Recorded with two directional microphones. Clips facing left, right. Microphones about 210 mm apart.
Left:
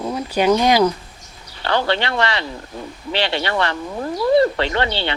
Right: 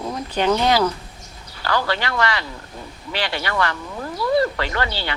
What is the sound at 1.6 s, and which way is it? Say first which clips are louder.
Speech: left 3 dB; 25° left (ahead or behind).